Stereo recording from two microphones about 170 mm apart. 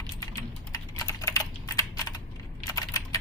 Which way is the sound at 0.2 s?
20° left (ahead or behind).